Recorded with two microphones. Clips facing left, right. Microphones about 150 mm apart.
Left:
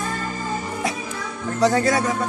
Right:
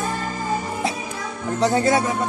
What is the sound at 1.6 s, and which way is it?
Speech, 25° right (ahead or behind).